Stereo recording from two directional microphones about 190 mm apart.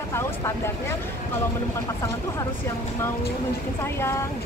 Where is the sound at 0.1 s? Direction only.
15° left (ahead or behind).